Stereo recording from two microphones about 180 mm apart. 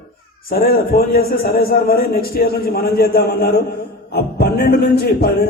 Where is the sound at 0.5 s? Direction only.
55° left (ahead or behind).